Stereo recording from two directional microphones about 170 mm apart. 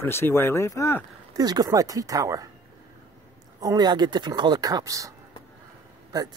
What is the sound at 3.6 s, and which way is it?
Speech, 25° right (ahead or behind).